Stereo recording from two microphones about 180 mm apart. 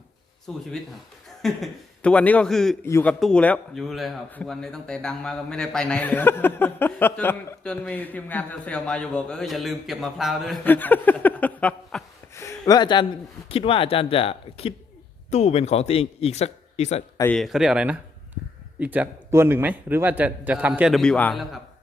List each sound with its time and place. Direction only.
0.5 s a man's voice: 5° left (ahead or behind)
12.3 s a man's voice: 15° left (ahead or behind); by 17.0 s 35° left (ahead or behind)
17.3 s a man's voice: centre (ahead or behind)